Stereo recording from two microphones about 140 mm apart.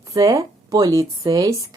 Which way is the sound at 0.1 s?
25° right (ahead or behind).